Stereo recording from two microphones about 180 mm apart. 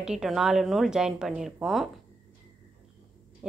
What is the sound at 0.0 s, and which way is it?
A woman's voice, 5° right (ahead or behind).